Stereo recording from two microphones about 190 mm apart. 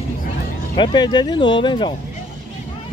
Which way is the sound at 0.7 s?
25° left (ahead or behind).